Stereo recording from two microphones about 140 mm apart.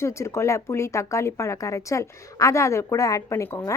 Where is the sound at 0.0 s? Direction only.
20° left (ahead or behind).